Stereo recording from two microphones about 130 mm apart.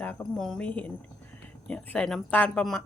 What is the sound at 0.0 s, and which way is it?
A woman's voice, 10° left (ahead or behind).